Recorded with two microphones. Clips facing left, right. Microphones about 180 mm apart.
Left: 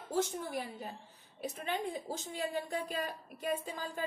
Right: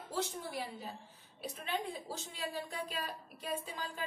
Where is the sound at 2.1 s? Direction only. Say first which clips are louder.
Left 4 dB; 55° left (ahead or behind).